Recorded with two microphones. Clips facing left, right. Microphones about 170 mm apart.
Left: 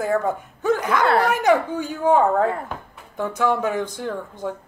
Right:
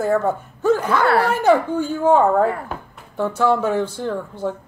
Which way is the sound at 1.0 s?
20° left (ahead or behind).